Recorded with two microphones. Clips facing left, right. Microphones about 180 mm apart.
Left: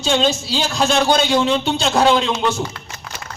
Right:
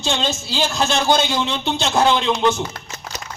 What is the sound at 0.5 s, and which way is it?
A man's voice, centre (ahead or behind).